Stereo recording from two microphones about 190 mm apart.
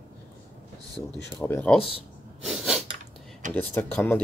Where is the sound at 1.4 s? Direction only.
10° left (ahead or behind).